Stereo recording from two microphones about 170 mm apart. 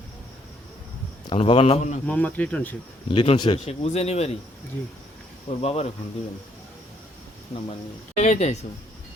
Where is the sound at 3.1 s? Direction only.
30° left (ahead or behind).